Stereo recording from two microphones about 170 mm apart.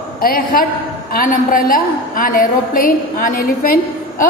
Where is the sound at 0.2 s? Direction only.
60° left (ahead or behind).